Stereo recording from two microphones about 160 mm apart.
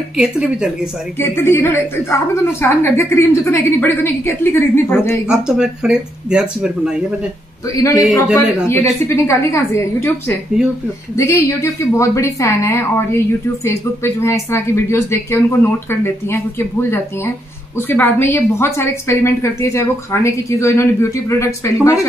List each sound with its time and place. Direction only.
0.2 s speech: 5° right (ahead or behind)
1.2 s a woman's voice: 15° left (ahead or behind)
5.3 s speech: 5° right (ahead or behind)
7.7 s a man's voice: 20° left (ahead or behind)
8.0 s speech: 5° right (ahead or behind)
8.6 s a woman's voice: 15° left (ahead or behind)